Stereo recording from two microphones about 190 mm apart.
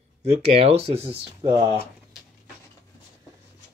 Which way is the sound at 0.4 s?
30° right (ahead or behind).